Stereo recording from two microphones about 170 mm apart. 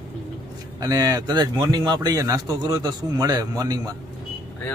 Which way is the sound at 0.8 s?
20° right (ahead or behind).